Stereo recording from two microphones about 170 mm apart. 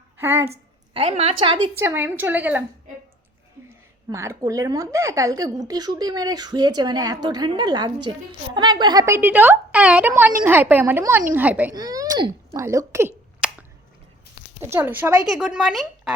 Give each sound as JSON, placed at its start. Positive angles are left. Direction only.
{"t": 0.2, "sound": "a woman's voice", "side_deg": -15}
{"t": 0.5, "sound": "a woman's voice", "side_deg": -35}
{"t": 1.8, "sound": "a woman's voice", "side_deg": -15}
{"t": 4.1, "sound": "a woman's voice", "side_deg": -20}
{"t": 11.7, "sound": "a woman's voice", "side_deg": -20}
{"t": 14.6, "sound": "a woman's voice", "side_deg": -15}